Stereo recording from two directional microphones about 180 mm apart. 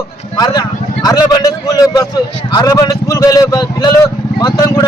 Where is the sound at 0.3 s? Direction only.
20° left (ahead or behind).